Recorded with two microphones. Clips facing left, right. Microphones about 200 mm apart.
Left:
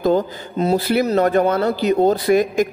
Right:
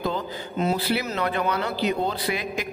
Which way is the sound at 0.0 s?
40° left (ahead or behind).